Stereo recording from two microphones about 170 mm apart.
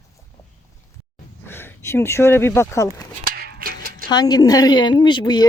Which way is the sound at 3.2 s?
60° right (ahead or behind).